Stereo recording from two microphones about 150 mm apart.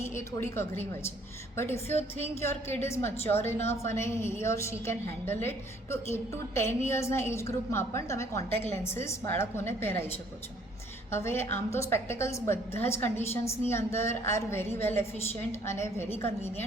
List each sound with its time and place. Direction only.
0.0 s a woman's voice: 15° left (ahead or behind)
11.1 s a woman's voice: 15° left (ahead or behind)